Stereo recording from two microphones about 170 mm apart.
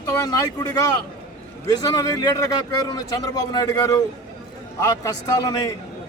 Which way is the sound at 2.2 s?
20° left (ahead or behind).